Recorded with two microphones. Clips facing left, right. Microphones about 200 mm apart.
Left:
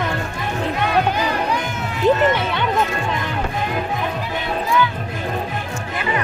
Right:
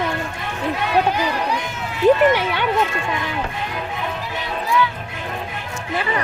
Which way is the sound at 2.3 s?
10° right (ahead or behind).